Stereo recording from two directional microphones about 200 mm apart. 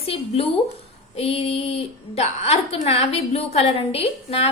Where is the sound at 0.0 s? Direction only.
30° left (ahead or behind).